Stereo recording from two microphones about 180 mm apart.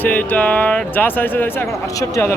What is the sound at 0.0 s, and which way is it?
Speech, 10° left (ahead or behind).